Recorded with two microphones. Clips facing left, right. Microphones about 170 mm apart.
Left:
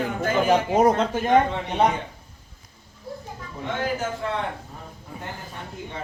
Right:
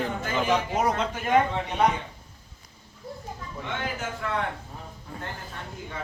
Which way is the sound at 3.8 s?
35° left (ahead or behind).